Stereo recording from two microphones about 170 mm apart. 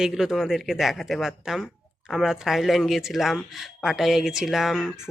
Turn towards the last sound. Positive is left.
turn(degrees=0)  # may be behind; listen again after turning